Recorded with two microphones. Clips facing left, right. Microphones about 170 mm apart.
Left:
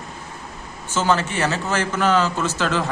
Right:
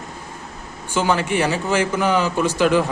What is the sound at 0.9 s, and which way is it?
A man's voice, 15° right (ahead or behind).